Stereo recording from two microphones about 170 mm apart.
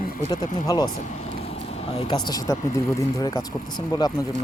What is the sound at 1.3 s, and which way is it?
Speech, 35° left (ahead or behind).